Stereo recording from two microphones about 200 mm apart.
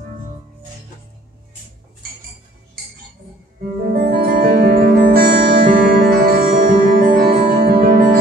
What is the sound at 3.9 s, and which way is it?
Music, 50° right (ahead or behind).